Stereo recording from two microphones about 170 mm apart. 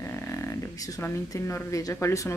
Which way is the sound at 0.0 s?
15° left (ahead or behind).